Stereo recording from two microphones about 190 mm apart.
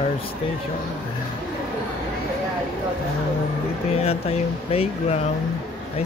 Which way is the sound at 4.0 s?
30° left (ahead or behind).